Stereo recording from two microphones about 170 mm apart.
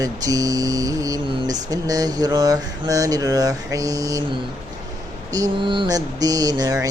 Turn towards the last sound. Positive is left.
turn(degrees=-20)  # may be behind; listen again after turning